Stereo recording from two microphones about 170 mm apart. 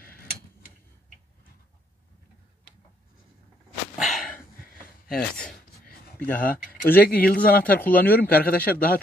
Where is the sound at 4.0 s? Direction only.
Centre (ahead or behind).